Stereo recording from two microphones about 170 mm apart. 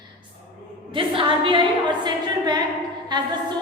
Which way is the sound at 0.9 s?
30° right (ahead or behind).